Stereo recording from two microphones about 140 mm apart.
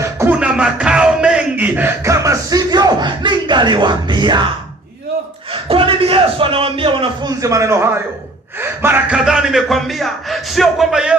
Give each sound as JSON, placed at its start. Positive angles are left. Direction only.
{"t": 0.0, "sound": "music", "side_deg": -20}
{"t": 0.3, "sound": "a sound", "side_deg": -5}
{"t": 5.5, "sound": "a man's voice", "side_deg": -40}
{"t": 9.1, "sound": "speech", "side_deg": -5}